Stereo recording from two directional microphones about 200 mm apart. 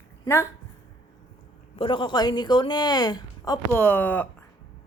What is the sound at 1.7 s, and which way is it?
Speech, 25° left (ahead or behind).